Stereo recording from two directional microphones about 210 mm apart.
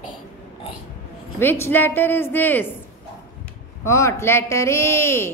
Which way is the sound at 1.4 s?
10° left (ahead or behind).